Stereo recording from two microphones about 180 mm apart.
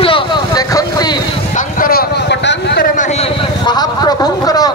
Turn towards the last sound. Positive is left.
turn(degrees=20)  # may be behind; listen again after turning